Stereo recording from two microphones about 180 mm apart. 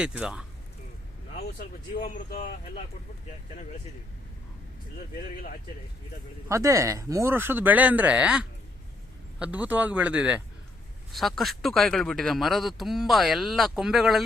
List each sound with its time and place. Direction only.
0.0 s a man's voice: 5° right (ahead or behind)
1.5 s speech: 50° left (ahead or behind)
6.5 s a man's voice: 15° right (ahead or behind); by 14.3 s centre (ahead or behind)